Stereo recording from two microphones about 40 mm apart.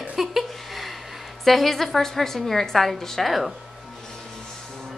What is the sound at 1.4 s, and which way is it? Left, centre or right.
A woman's voice, centre.